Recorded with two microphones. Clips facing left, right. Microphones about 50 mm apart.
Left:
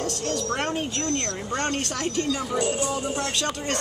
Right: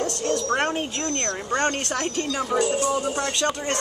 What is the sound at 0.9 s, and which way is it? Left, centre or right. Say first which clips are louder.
Speech: even; centre.